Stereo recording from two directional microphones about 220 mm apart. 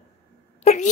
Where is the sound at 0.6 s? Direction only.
30° left (ahead or behind).